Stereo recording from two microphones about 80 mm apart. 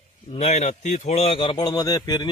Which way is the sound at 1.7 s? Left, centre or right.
Left.